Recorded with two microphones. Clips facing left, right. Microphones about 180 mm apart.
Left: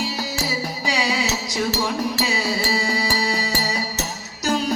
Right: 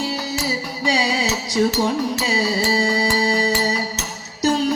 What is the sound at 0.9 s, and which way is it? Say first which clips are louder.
Music: right 3 dB; 30° right (ahead or behind).